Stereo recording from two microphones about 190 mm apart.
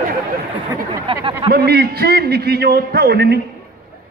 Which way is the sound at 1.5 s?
55° right (ahead or behind).